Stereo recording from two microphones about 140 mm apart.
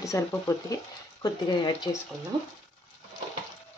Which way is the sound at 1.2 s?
35° left (ahead or behind).